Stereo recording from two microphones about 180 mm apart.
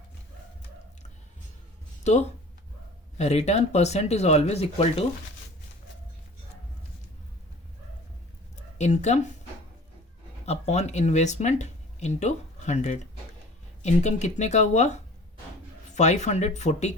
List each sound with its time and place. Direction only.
3.2 s speech: 35° left (ahead or behind)
8.5 s speech: 40° left (ahead or behind)
10.4 s speech: 35° left (ahead or behind)
16.0 s speech: 40° left (ahead or behind)